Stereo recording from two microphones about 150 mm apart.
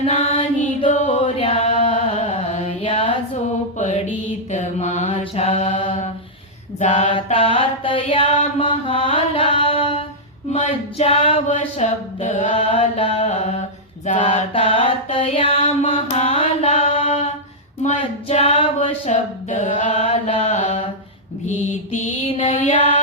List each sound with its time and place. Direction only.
0.0 s music: 45° left (ahead or behind)
0.9 s a sound: 55° left (ahead or behind)
1.4 s chant: 40° left (ahead or behind)
1.9 s carnatic music: 45° left (ahead or behind)
4.5 s mantra: 50° left (ahead or behind)
7.3 s mantra: 35° left (ahead or behind)
10.5 s a sound: 40° left (ahead or behind)
12.5 s mantra: 40° left (ahead or behind)
17.8 s a sound: 45° left (ahead or behind)
19.1 s a sound: 55° left (ahead or behind)
19.9 s mantra: 45° left (ahead or behind)
21.9 s music: 50° left (ahead or behind)